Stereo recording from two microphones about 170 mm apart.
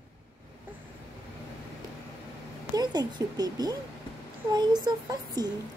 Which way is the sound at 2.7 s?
25° right (ahead or behind).